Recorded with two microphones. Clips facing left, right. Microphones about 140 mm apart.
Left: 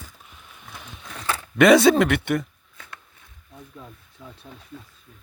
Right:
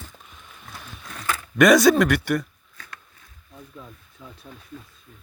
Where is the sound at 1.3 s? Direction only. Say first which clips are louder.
Left 1 dB; 25° left (ahead or behind).